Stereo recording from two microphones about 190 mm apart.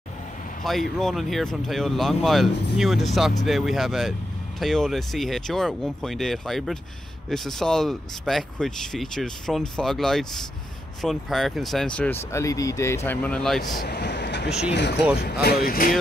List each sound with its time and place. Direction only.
0.7 s speech: centre (ahead or behind)
13.8 s speech: 60° left (ahead or behind)